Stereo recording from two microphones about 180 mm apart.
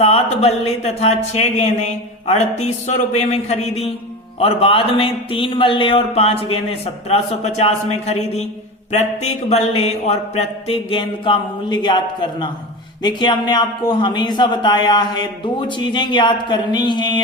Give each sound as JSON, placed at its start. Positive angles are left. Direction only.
{"t": 0.0, "sound": "speech", "side_deg": 35}